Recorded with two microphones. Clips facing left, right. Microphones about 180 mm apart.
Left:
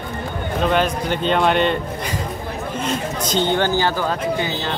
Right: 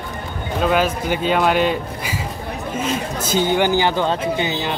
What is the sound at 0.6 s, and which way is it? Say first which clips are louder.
A man's voice: right 1 dB; 5° right (ahead or behind).